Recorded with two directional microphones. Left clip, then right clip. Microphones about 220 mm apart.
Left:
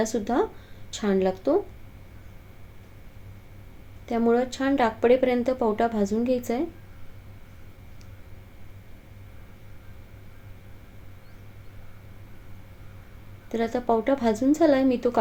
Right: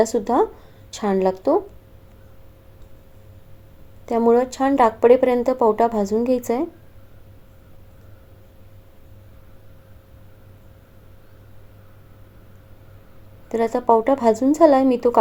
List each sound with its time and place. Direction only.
0.0 s a woman's voice: 10° right (ahead or behind)
4.0 s a woman's voice: 10° right (ahead or behind)
13.5 s a woman's voice: 10° right (ahead or behind)